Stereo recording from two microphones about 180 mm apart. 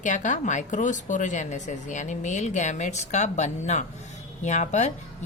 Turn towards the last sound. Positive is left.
turn(degrees=40)  # may be behind; listen again after turning